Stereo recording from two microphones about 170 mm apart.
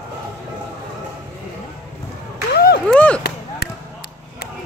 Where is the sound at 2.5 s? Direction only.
70° left (ahead or behind).